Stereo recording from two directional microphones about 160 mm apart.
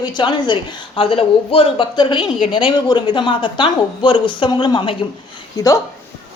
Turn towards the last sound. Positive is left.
turn(degrees=20)  # may be behind; listen again after turning